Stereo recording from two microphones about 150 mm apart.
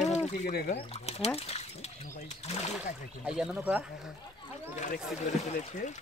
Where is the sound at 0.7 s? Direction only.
40° left (ahead or behind).